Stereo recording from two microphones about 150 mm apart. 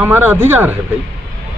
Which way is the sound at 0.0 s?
10° right (ahead or behind).